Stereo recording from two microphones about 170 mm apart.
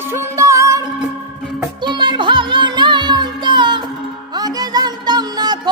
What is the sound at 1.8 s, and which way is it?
Music, 25° right (ahead or behind).